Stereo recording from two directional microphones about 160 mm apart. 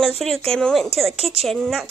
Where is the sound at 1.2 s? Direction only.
40° right (ahead or behind).